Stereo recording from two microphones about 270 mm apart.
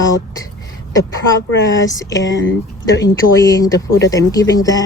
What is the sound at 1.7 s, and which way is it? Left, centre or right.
Speech, centre.